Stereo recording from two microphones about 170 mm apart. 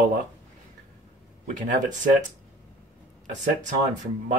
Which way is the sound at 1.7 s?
50° right (ahead or behind).